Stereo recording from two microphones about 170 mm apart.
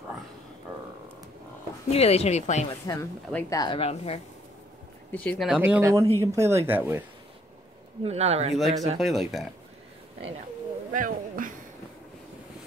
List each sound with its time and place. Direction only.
1.9 s speech: 35° left (ahead or behind)
2.9 s speech: 20° left (ahead or behind)
5.1 s speech: 5° left (ahead or behind)
5.6 s speech: 15° right (ahead or behind)
8.0 s speech: 40° right (ahead or behind)
8.5 s speech: centre (ahead or behind)
10.9 s speech: 55° right (ahead or behind)